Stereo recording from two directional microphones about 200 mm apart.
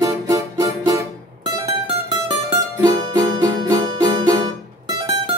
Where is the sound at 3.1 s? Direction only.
20° right (ahead or behind).